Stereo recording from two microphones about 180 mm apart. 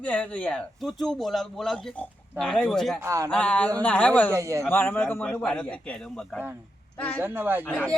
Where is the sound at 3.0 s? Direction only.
20° right (ahead or behind).